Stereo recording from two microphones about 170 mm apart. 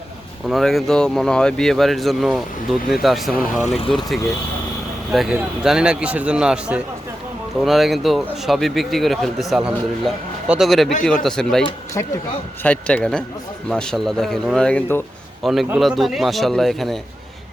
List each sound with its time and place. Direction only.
0.4 s speech: centre (ahead or behind)
5.1 s speech: centre (ahead or behind)
12.0 s a man's voice: 15° left (ahead or behind)
15.4 s speech: centre (ahead or behind)